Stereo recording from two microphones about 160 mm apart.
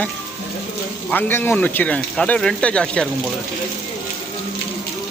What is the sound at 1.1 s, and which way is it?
Speech, 15° left (ahead or behind).